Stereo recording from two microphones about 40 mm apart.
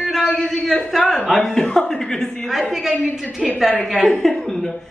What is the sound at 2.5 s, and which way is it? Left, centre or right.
A woman's voice, centre.